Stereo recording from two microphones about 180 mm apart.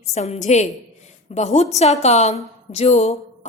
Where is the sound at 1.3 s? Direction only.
40° left (ahead or behind).